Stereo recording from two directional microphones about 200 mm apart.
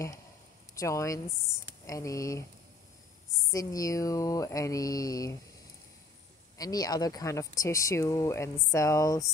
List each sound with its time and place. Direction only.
0.7 s speech: 15° left (ahead or behind)
3.5 s speech: 15° left (ahead or behind)
6.6 s speech: 20° left (ahead or behind)